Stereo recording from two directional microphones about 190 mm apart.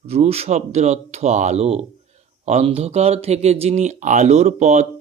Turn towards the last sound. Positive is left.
turn(degrees=-40)  # may be behind; listen again after turning